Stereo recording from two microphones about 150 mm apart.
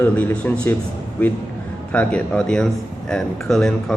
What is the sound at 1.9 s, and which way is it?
A man's voice, 10° left (ahead or behind).